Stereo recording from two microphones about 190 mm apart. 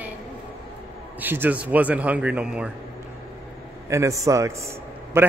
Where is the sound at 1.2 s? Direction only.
10° right (ahead or behind).